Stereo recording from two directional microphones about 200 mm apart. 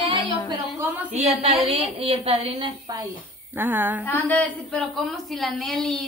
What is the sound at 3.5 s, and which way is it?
Speech, 10° right (ahead or behind).